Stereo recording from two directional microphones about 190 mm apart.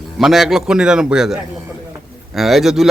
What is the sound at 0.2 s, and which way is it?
A man's voice, centre (ahead or behind).